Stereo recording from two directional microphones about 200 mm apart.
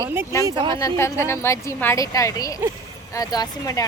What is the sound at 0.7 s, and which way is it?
Speech, 15° left (ahead or behind).